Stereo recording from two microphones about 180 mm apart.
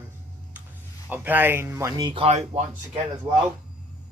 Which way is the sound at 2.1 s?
35° right (ahead or behind).